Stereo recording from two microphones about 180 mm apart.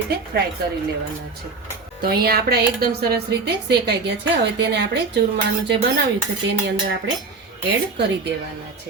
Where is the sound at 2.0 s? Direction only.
60° right (ahead or behind).